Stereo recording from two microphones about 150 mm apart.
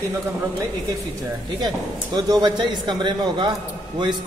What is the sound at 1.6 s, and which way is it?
A man's voice, 30° right (ahead or behind).